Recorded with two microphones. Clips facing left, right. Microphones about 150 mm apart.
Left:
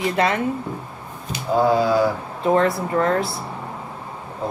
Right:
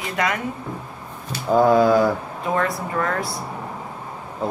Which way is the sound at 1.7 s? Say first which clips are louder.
Right 3 dB; 50° right (ahead or behind).